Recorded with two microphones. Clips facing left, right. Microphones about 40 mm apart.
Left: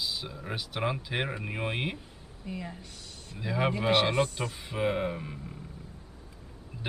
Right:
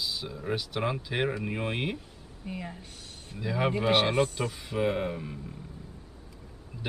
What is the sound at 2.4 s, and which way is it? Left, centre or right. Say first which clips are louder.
Speech: even; centre.